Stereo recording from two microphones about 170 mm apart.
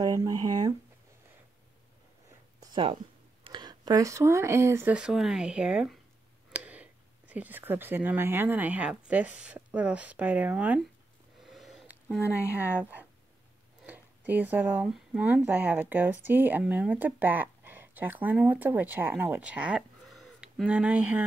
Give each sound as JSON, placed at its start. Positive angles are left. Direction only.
{"t": 0.0, "sound": "speech", "side_deg": -20}
{"t": 2.6, "sound": "a sound", "side_deg": -30}
{"t": 3.4, "sound": "speech", "side_deg": -25}
{"t": 11.4, "sound": "a sound", "side_deg": 0}
{"t": 12.4, "sound": "a woman's voice", "side_deg": 15}
{"t": 13.8, "sound": "speech", "side_deg": -10}